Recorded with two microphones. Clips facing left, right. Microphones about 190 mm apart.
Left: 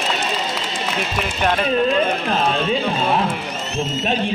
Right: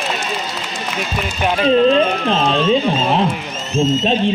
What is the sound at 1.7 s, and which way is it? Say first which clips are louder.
Speech: right 9 dB; 25° right (ahead or behind).